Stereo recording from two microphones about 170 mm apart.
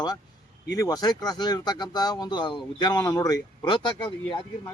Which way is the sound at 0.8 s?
20° left (ahead or behind).